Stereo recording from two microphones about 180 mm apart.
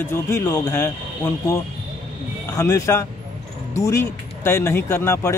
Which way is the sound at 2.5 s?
15° left (ahead or behind).